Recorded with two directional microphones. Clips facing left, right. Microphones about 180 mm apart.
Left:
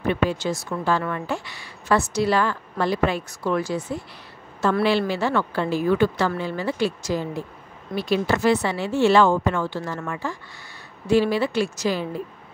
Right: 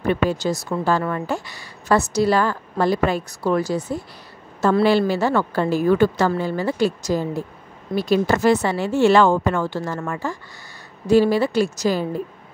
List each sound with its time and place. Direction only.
0.0 s a woman's voice: 40° right (ahead or behind)